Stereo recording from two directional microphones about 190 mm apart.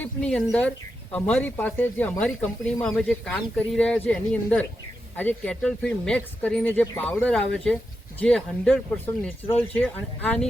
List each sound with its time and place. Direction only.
0.0 s speech: 5° left (ahead or behind)